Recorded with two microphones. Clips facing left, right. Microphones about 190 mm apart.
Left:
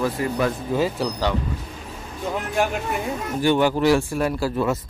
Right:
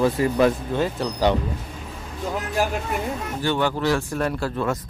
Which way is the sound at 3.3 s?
15° left (ahead or behind).